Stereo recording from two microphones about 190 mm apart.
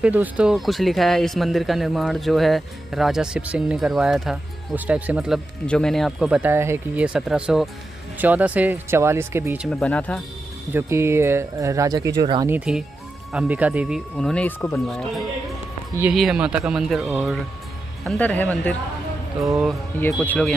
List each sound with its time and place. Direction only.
0.0 s speech: 5° right (ahead or behind)
9.7 s speech: 5° left (ahead or behind)
10.7 s speech: 15° right (ahead or behind)
12.5 s speech: 5° right (ahead or behind)
20.0 s speech: 10° left (ahead or behind)